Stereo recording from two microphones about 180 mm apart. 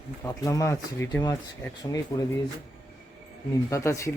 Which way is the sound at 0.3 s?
15° left (ahead or behind).